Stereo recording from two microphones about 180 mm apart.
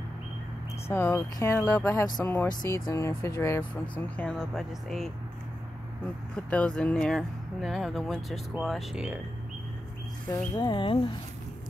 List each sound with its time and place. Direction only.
0.8 s speech: 15° left (ahead or behind)
6.3 s speech: 5° left (ahead or behind)
10.3 s speech: 25° left (ahead or behind)